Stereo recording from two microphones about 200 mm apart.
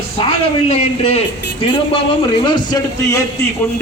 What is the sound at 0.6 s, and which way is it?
Speech, 30° left (ahead or behind).